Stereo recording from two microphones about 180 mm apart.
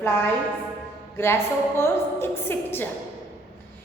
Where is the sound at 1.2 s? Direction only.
15° left (ahead or behind).